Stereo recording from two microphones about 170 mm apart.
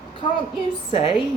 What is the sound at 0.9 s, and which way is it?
Speech, 30° left (ahead or behind).